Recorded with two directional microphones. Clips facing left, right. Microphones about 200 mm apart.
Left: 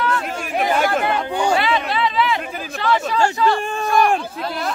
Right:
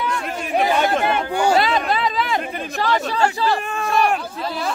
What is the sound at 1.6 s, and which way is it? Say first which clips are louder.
Chatter: even; 40° right (ahead or behind).